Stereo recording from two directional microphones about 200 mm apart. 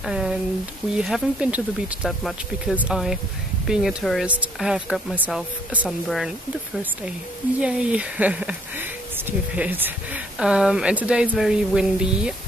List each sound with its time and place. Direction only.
0.0 s a sound: centre (ahead or behind)
0.9 s speech: 5° right (ahead or behind)
7.6 s speech: 5° right (ahead or behind)